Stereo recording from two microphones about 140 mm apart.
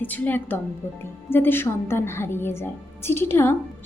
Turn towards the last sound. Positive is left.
turn(degrees=15)  # may be behind; listen again after turning